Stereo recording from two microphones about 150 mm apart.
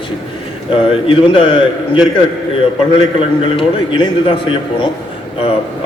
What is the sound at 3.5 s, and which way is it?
Speech, 35° left (ahead or behind).